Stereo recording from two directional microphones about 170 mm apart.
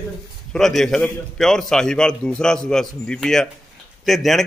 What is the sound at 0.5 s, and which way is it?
A man's voice, centre (ahead or behind).